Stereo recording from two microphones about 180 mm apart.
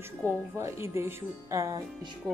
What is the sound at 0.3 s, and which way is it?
Speech, 15° right (ahead or behind).